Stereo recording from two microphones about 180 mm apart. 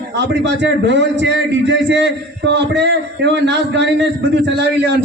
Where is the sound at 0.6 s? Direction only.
75° right (ahead or behind).